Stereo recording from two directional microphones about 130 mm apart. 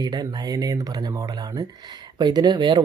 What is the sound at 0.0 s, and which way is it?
Speech, 30° right (ahead or behind).